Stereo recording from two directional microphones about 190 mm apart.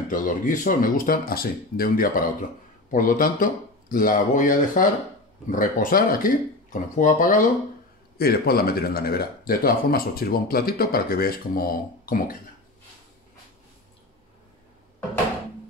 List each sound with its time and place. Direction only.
0.1 s speech: 45° left (ahead or behind)